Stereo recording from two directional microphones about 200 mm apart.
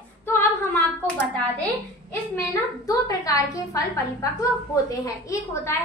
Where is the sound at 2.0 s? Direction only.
15° left (ahead or behind).